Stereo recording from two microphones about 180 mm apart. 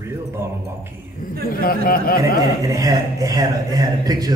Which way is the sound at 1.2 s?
50° left (ahead or behind).